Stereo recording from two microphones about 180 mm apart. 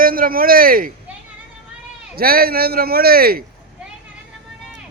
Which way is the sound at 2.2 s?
55° right (ahead or behind).